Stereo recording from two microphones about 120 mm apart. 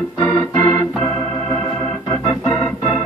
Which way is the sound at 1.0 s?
35° left (ahead or behind).